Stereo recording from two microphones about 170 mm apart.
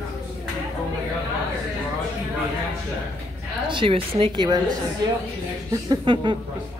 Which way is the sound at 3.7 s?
30° right (ahead or behind).